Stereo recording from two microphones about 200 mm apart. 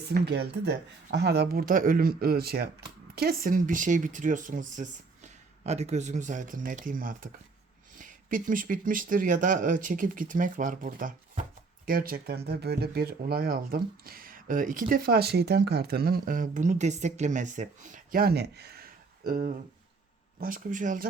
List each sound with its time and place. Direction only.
0.1 s speech: 55° right (ahead or behind)